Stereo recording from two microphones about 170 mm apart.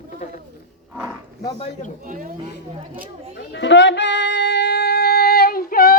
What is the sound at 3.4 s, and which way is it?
Music, 90° left.